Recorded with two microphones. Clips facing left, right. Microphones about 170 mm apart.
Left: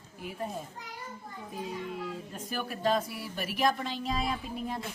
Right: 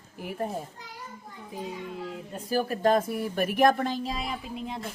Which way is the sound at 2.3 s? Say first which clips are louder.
Right 12 dB; 35° right (ahead or behind).